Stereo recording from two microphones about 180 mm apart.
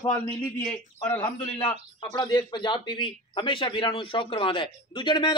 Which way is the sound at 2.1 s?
25° left (ahead or behind).